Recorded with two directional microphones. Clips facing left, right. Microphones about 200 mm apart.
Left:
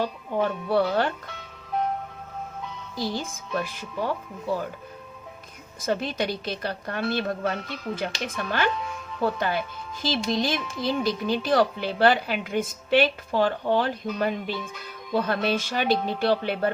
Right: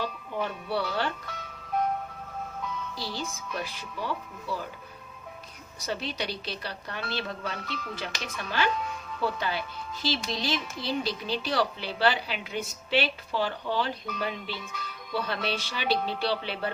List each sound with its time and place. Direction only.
0.4 s speech: 50° left (ahead or behind)
3.0 s speech: 50° left (ahead or behind)
5.8 s speech: 50° left (ahead or behind)